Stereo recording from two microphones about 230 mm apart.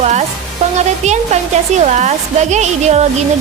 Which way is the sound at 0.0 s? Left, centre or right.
Right.